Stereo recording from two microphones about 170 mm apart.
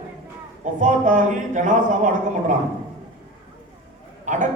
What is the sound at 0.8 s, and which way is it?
A man's voice, 50° right (ahead or behind).